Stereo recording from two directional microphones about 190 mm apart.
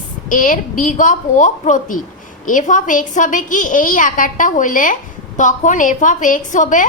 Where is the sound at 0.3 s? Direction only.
45° left (ahead or behind).